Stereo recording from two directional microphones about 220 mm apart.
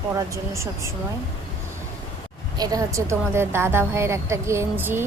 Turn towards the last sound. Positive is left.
turn(degrees=-10)  # may be behind; listen again after turning